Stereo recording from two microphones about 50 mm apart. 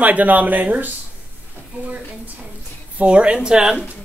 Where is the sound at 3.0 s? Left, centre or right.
Right.